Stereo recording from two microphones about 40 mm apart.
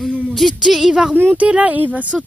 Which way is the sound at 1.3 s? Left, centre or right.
Right.